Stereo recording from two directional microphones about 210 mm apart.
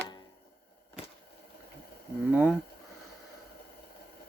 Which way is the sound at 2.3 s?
5° right (ahead or behind).